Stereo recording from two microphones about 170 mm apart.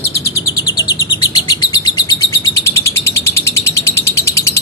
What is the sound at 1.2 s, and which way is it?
Bird, 20° left (ahead or behind).